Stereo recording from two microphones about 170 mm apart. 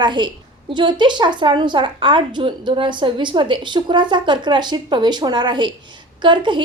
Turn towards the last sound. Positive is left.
turn(degrees=-30)  # may be behind; listen again after turning